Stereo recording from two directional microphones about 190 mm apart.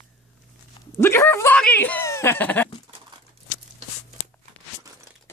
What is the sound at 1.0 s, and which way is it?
Speech, 10° left (ahead or behind).